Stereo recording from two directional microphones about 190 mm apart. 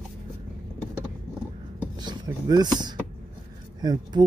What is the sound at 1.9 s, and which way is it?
Speech, 20° right (ahead or behind).